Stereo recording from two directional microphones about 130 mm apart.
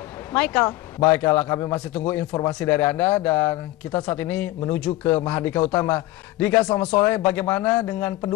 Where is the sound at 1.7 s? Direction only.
10° left (ahead or behind).